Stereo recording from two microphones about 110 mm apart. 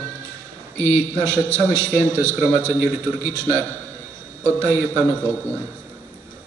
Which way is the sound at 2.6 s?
15° left (ahead or behind).